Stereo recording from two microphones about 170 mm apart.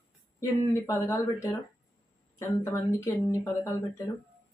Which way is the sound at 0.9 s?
15° left (ahead or behind).